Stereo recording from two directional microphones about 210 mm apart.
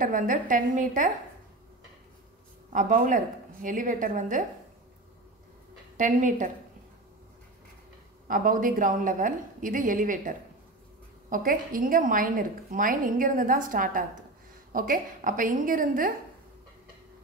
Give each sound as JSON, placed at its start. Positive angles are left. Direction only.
{"t": 0.0, "sound": "a woman's voice", "side_deg": -40}
{"t": 2.7, "sound": "a woman's voice", "side_deg": -40}
{"t": 5.9, "sound": "a woman's voice", "side_deg": -40}
{"t": 8.3, "sound": "a woman's voice", "side_deg": -40}